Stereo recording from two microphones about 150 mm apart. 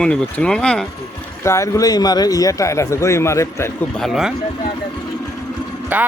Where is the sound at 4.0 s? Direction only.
Centre (ahead or behind).